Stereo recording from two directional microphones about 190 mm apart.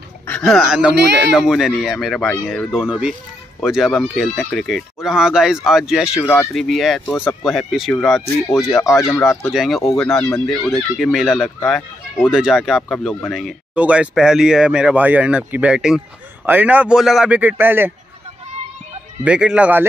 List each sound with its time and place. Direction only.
0.3 s speech: centre (ahead or behind)
6.2 s speech: 15° left (ahead or behind)
6.5 s a man's voice: centre (ahead or behind)
19.2 s a man's voice: 5° right (ahead or behind)